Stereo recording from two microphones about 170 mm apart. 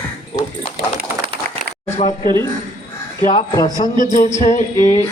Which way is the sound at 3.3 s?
30° left (ahead or behind).